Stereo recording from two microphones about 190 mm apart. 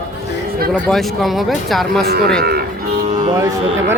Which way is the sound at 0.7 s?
Centre (ahead or behind).